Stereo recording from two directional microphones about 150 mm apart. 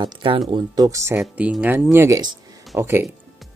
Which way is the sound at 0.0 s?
30° right (ahead or behind).